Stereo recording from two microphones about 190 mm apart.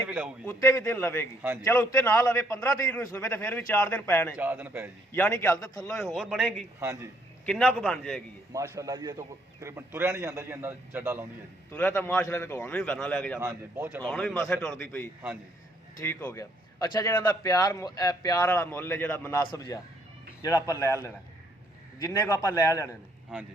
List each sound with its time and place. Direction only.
0.4 s a man's voice: 15° left (ahead or behind)
4.4 s a man's voice: 10° right (ahead or behind)
5.1 s a man's voice: 10° left (ahead or behind)
6.7 s a man's voice: 15° right (ahead or behind)
7.4 s a man's voice: 5° left (ahead or behind)
8.5 s a man's voice: 15° right (ahead or behind)
11.7 s a man's voice: 10° left (ahead or behind)
13.4 s a man's voice: 15° right (ahead or behind)
14.0 s a man's voice: 5° left (ahead or behind)
22.0 s a man's voice: 15° left (ahead or behind)